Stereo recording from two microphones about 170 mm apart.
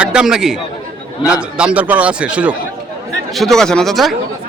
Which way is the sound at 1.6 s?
5° right (ahead or behind).